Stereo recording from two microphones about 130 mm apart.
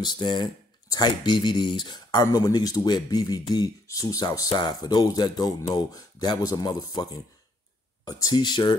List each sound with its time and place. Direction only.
0.0 s speech: 35° left (ahead or behind)